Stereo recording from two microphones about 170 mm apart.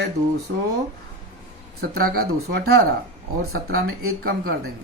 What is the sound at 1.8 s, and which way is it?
Speech, 65° right (ahead or behind).